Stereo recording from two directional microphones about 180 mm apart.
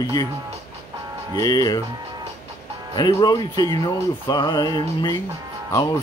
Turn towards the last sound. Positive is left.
turn(degrees=20)  # may be behind; listen again after turning